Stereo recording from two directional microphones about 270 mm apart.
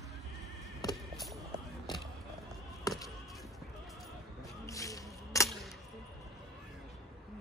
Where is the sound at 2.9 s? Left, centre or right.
Centre.